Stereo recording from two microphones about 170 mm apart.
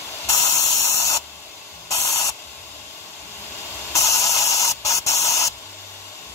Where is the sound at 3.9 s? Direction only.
15° left (ahead or behind).